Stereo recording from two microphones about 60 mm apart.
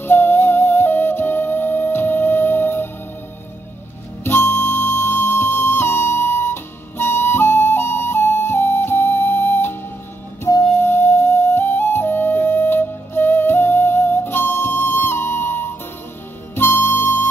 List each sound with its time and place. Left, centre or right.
0.0 s music: left
4.2 s music: left
10.8 s flute: left
16.5 s harmonica: left